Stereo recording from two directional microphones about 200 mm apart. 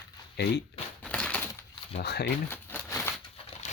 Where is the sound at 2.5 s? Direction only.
10° left (ahead or behind).